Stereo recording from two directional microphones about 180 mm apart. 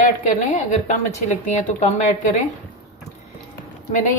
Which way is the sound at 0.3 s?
45° left (ahead or behind).